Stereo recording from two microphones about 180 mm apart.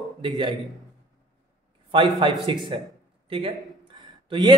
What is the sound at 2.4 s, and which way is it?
Speech, 30° right (ahead or behind).